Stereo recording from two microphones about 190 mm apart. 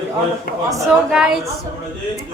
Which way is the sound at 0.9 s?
5° right (ahead or behind).